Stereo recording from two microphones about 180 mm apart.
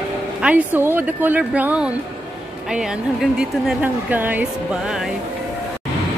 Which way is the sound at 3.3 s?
5° right (ahead or behind).